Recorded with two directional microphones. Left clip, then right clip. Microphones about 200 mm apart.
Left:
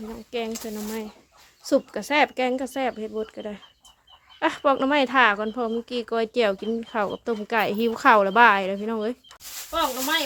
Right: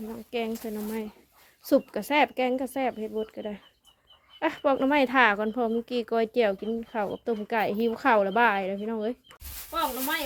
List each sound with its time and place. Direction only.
0.1 s speech: 15° right (ahead or behind); by 10.2 s centre (ahead or behind)